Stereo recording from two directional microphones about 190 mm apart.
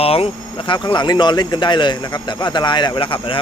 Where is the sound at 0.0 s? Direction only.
30° left (ahead or behind).